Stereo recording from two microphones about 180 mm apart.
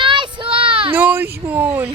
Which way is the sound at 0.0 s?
25° right (ahead or behind).